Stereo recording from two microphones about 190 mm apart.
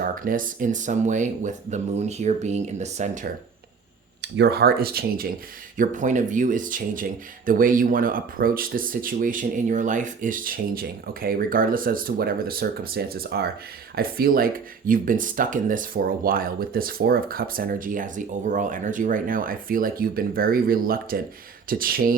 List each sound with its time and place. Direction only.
0.0 s speech: 45° right (ahead or behind)
4.2 s speech: 60° right (ahead or behind)